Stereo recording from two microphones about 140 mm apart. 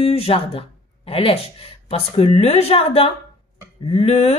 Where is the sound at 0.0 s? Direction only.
45° left (ahead or behind).